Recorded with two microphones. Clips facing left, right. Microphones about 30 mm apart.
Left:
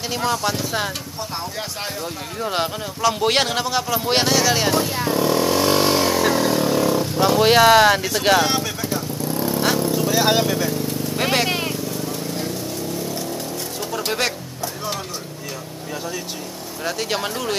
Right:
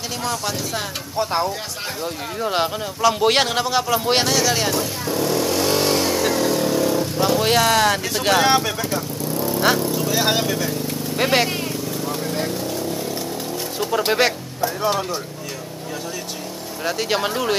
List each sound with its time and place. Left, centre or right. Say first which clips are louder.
0.2 s speech: left 3 dB; centre
2.4 s speech: right 2 dB; centre
4.2 s speech: left 1 dB; centre
4.9 s vehicle: left 2 dB; centre
8.1 s speech: left 2 dB; centre
8.4 s speech: right 3 dB; centre
9.3 s vehicle: right 2 dB; centre
11.4 s vehicle: left 2 dB; left
13.7 s music: right 5 dB; centre
16.8 s speech: right 2 dB; centre